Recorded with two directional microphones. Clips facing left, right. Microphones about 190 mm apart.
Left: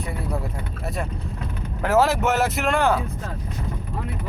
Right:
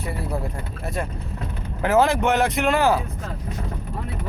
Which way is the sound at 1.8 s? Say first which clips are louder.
Right 1 dB; centre (ahead or behind).